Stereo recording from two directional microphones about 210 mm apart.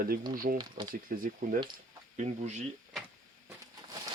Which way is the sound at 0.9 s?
40° right (ahead or behind).